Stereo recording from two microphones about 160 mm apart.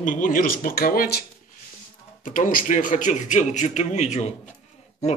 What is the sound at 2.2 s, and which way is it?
A man's voice, 55° left (ahead or behind).